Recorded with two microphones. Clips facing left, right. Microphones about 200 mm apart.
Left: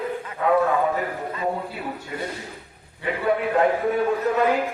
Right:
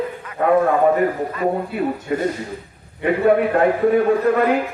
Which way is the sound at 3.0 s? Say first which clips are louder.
Right 7 dB; 55° right (ahead or behind).